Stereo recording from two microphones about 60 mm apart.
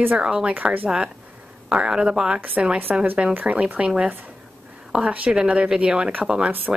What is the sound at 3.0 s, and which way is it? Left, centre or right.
Speech, right.